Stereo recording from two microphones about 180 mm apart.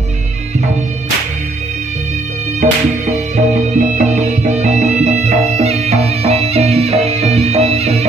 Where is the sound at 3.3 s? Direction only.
40° right (ahead or behind).